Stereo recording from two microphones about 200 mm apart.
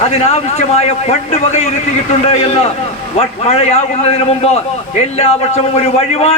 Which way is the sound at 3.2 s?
30° left (ahead or behind).